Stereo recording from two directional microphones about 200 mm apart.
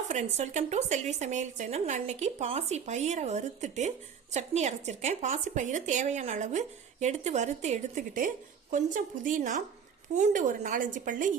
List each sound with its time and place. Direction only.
0.1 s speech: 35° right (ahead or behind)